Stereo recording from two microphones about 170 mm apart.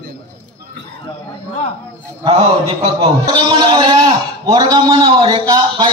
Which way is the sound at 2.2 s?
35° right (ahead or behind).